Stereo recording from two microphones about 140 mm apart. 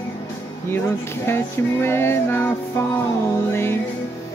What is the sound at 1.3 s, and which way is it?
Music, 15° left (ahead or behind).